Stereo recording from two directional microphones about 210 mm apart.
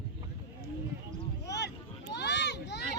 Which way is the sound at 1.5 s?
55° left (ahead or behind).